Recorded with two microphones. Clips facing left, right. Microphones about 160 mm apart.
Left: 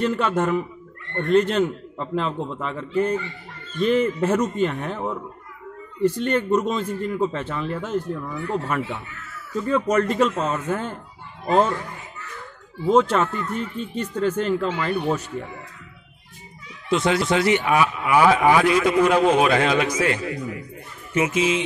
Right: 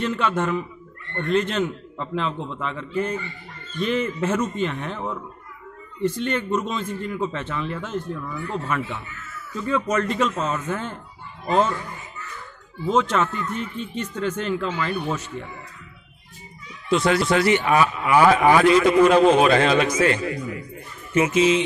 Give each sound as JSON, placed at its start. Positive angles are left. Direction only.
{"t": 0.0, "sound": "speech", "side_deg": 40}
{"t": 12.9, "sound": "speech", "side_deg": 35}
{"t": 16.9, "sound": "a man's voice", "side_deg": 20}